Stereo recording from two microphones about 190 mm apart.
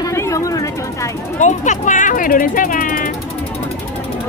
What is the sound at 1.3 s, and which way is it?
Speech, 40° left (ahead or behind).